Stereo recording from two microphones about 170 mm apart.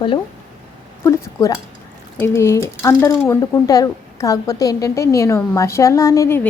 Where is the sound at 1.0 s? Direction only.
15° left (ahead or behind).